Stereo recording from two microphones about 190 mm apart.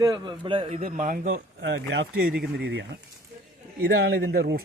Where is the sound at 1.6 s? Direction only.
70° right (ahead or behind).